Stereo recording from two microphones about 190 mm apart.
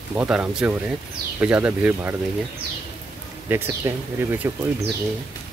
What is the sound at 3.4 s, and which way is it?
Speech, 10° right (ahead or behind).